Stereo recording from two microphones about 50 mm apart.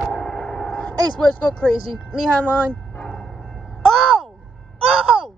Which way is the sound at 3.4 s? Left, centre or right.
Centre.